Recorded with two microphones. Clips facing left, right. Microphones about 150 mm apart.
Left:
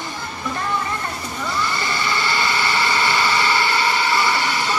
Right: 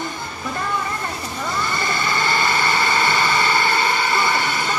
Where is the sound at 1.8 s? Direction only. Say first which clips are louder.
Right 1 dB; 50° right (ahead or behind).